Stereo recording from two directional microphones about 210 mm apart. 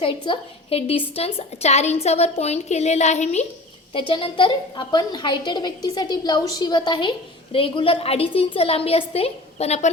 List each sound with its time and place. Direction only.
0.0 s a woman's voice: 25° left (ahead or behind)